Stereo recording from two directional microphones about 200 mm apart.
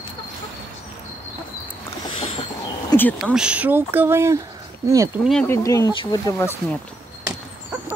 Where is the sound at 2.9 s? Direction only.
10° left (ahead or behind).